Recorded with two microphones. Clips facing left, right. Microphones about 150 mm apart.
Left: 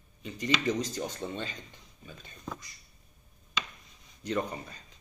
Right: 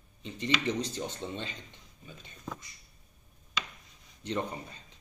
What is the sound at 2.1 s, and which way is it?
Speech, 20° right (ahead or behind).